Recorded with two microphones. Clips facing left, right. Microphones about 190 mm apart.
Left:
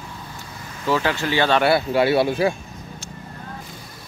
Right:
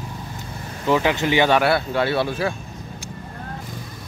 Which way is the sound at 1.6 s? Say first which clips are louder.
Left 2 dB; 5° left (ahead or behind).